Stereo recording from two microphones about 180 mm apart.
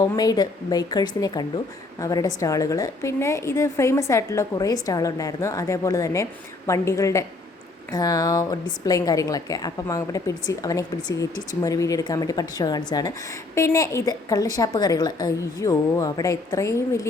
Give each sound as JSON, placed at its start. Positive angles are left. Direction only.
{"t": 0.0, "sound": "a woman's voice", "side_deg": 20}